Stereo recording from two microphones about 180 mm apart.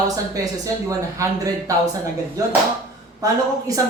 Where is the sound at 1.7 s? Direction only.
20° right (ahead or behind).